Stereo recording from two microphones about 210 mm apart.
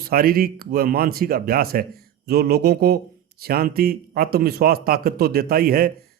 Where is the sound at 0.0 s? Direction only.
45° right (ahead or behind).